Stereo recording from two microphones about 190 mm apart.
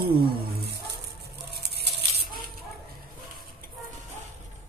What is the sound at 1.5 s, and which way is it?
Patter, 60° right (ahead or behind).